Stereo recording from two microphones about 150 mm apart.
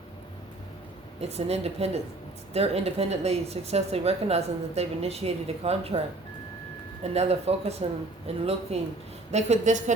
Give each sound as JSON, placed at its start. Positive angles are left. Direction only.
{"t": 1.2, "sound": "a woman's voice", "side_deg": -45}
{"t": 7.0, "sound": "a woman's voice", "side_deg": -45}